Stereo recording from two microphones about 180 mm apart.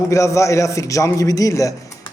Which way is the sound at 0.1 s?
15° left (ahead or behind).